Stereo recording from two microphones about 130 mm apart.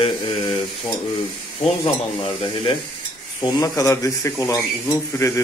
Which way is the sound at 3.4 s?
25° left (ahead or behind).